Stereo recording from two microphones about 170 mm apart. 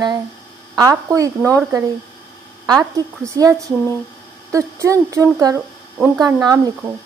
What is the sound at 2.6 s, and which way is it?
A woman's voice, 20° right (ahead or behind).